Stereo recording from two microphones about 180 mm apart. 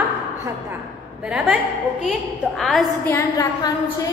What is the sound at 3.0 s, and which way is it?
Speech, 15° left (ahead or behind).